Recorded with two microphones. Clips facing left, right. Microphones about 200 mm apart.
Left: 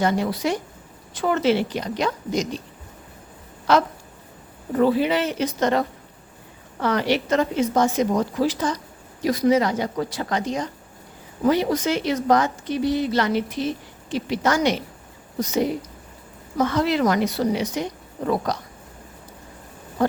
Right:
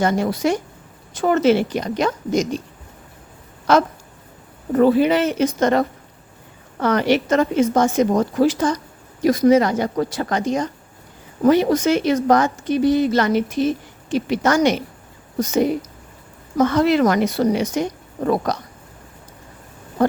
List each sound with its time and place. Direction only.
0.0 s a woman's voice: 45° right (ahead or behind)
3.7 s a woman's voice: 45° right (ahead or behind)
6.8 s a woman's voice: 50° right (ahead or behind)
16.6 s a woman's voice: 50° right (ahead or behind)